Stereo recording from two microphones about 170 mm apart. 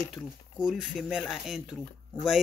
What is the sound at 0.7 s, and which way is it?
Speech, centre (ahead or behind).